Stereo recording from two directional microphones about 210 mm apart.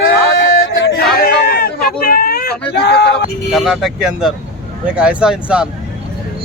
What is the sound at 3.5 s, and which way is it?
Speech, centre (ahead or behind).